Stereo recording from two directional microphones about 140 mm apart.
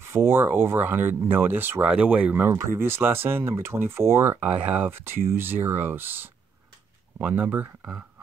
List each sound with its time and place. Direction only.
0.0 s speech: 15° right (ahead or behind)